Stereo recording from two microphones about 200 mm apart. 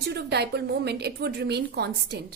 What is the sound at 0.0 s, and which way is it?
A woman's voice, 55° right (ahead or behind).